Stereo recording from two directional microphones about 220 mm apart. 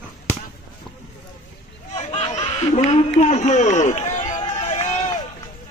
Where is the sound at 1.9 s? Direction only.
30° left (ahead or behind).